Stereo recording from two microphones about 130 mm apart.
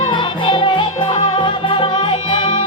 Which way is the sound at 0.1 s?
35° left (ahead or behind).